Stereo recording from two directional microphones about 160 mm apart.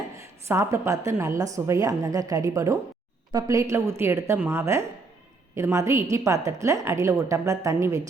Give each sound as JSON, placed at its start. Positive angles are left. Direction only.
{"t": 0.4, "sound": "a woman's voice", "side_deg": -15}